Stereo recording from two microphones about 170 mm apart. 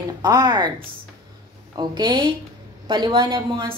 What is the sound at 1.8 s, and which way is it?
A woman's voice, 25° right (ahead or behind).